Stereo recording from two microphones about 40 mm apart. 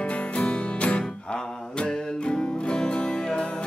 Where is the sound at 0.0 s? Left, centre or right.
Left.